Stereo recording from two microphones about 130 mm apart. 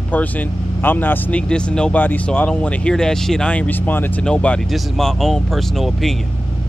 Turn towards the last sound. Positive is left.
turn(degrees=0)  # may be behind; listen again after turning